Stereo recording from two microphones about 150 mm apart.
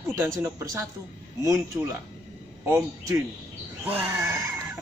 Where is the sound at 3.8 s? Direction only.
15° right (ahead or behind).